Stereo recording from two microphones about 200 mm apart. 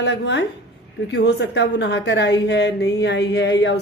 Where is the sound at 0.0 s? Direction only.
60° left (ahead or behind).